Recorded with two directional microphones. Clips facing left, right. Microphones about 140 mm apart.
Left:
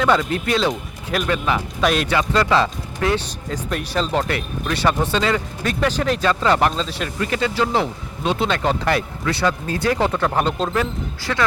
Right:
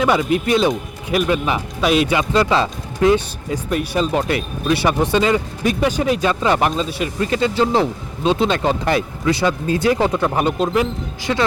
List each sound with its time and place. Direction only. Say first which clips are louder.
0.0 s speech: right 2 dB; 10° right (ahead or behind)
2.1 s speech: right 1 dB; 20° right (ahead or behind)
3.5 s speech: right 4 dB; 10° right (ahead or behind)
7.2 s speech: right 3 dB; 30° right (ahead or behind)